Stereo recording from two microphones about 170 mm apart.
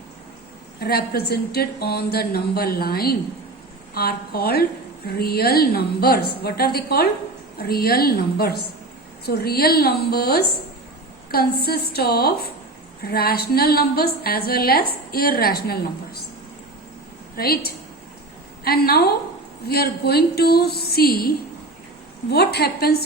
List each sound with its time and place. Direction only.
0.8 s a woman's voice: 65° left (ahead or behind)
17.3 s a woman's voice: 65° left (ahead or behind)